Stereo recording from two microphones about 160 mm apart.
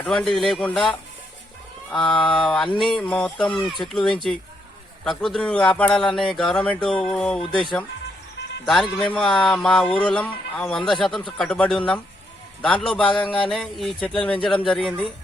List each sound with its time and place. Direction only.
0.0 s speech: 5° left (ahead or behind)
13.1 s a sound: 30° left (ahead or behind)
13.5 s speech: centre (ahead or behind)